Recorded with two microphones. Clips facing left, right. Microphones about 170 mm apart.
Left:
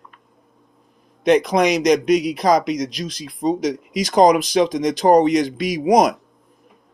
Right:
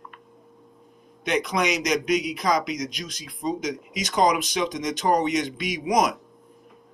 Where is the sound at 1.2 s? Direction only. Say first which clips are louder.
Left 9 dB; 35° left (ahead or behind).